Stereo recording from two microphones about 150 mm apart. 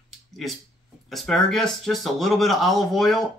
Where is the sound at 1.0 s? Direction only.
Centre (ahead or behind).